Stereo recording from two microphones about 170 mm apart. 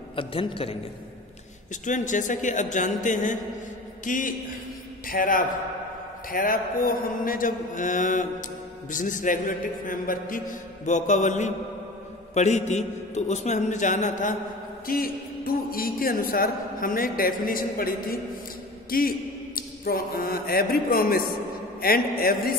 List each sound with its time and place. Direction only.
0.1 s a man's voice: 30° left (ahead or behind)
1.7 s mantra: 50° left (ahead or behind)
5.0 s a man's voice: 55° left (ahead or behind)
6.3 s mantra: 55° left (ahead or behind)
14.9 s a man's voice: 60° left (ahead or behind)